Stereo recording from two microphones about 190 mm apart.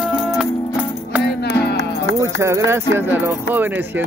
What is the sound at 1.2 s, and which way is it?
Music, 60° left (ahead or behind).